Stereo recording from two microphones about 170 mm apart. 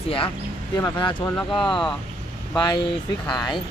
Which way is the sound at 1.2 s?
10° left (ahead or behind).